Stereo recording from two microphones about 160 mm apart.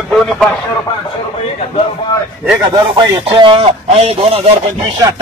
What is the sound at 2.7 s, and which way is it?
Speech, 30° right (ahead or behind).